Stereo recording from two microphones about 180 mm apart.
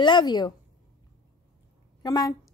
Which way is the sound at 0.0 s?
25° left (ahead or behind).